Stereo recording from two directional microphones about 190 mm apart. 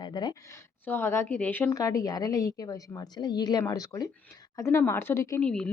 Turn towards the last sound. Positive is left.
turn(degrees=5)  # may be behind; listen again after turning